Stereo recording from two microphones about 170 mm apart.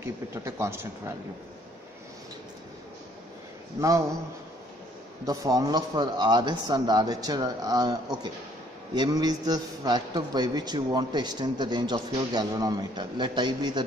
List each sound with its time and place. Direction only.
0.0 s speech: 15° right (ahead or behind)
5.2 s a man's voice: 20° right (ahead or behind)